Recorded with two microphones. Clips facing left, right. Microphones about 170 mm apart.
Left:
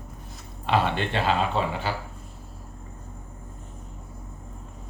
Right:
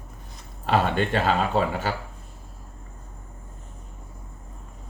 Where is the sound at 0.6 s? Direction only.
45° right (ahead or behind).